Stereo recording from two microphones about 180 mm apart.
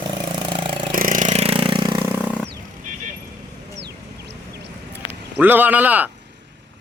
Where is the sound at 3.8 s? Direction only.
70° right (ahead or behind).